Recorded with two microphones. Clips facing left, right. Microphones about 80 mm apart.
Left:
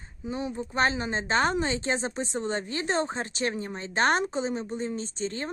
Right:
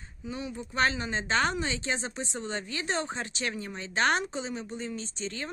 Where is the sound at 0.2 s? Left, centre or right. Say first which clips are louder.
Left 5 dB; left.